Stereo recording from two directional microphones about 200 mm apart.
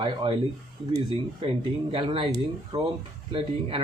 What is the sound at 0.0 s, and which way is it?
Speech, 25° right (ahead or behind).